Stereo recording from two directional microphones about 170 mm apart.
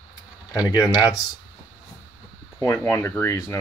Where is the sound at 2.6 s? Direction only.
20° left (ahead or behind).